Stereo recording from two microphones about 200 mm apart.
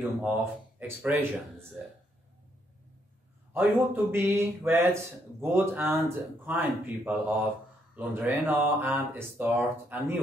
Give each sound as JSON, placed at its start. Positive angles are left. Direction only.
{"t": 0.2, "sound": "speech", "side_deg": -10}
{"t": 3.5, "sound": "speech", "side_deg": -10}